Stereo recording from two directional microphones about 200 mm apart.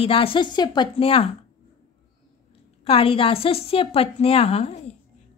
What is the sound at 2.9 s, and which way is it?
A woman's voice, 30° left (ahead or behind).